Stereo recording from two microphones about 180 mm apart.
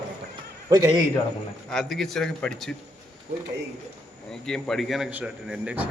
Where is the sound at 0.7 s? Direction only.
20° right (ahead or behind).